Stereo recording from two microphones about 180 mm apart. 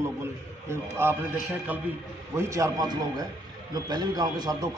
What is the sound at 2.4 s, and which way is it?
A man's voice, 15° right (ahead or behind).